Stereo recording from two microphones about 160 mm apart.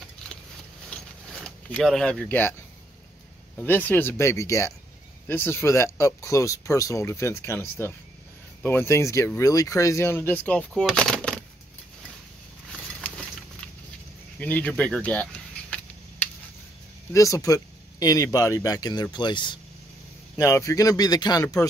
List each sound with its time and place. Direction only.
0.8 s zipper: 5° left (ahead or behind)
3.5 s speech: 10° left (ahead or behind)
14.4 s a sound: 10° left (ahead or behind)
17.1 s speech: 20° left (ahead or behind)
20.3 s speech: 20° left (ahead or behind)